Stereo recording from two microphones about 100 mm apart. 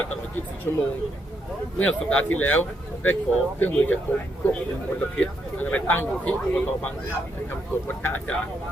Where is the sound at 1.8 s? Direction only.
10° left (ahead or behind).